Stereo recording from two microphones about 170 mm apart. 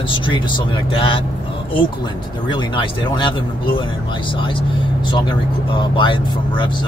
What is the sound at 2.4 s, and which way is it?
Speech, 25° left (ahead or behind).